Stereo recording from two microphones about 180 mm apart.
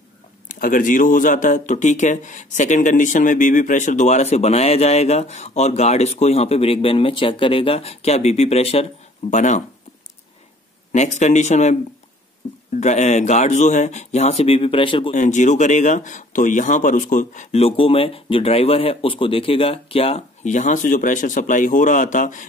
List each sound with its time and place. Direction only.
0.5 s speech: 50° left (ahead or behind)
10.9 s speech: 40° left (ahead or behind)
12.8 s speech: 40° left (ahead or behind)
15.1 s speech: 45° left (ahead or behind)